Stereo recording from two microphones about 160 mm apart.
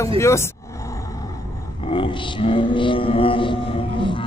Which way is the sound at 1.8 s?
35° left (ahead or behind).